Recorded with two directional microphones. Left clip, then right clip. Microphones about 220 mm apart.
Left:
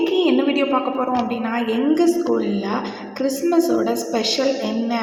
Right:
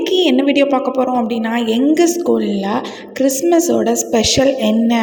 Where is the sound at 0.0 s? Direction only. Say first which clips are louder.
Right 4 dB; 35° right (ahead or behind).